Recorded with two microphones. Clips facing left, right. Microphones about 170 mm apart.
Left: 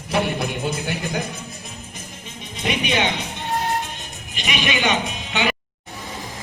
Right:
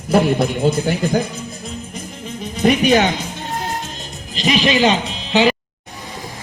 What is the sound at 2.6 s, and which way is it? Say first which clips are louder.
Speech: right 9 dB; 40° right (ahead or behind).